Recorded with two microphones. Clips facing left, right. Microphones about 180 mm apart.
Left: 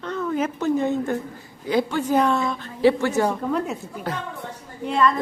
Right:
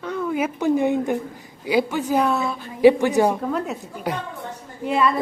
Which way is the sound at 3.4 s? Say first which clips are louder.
Even; centre (ahead or behind).